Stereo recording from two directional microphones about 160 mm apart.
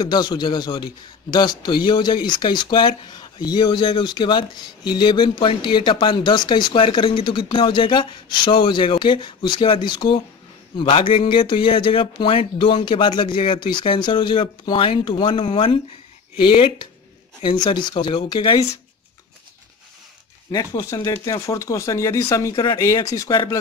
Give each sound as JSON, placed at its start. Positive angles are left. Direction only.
{"t": 0.0, "sound": "speech", "side_deg": 25}
{"t": 20.5, "sound": "speech", "side_deg": 20}